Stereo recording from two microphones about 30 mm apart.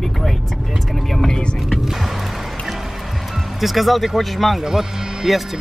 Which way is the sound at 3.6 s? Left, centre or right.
Centre.